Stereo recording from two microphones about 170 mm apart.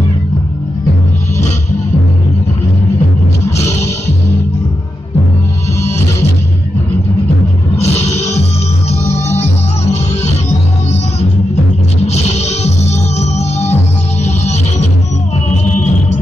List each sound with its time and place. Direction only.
7.7 s music: 40° left (ahead or behind)
12.1 s music: 40° left (ahead or behind)